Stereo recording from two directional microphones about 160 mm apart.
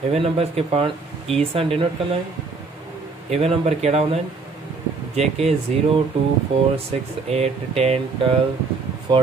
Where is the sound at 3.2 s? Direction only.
40° right (ahead or behind).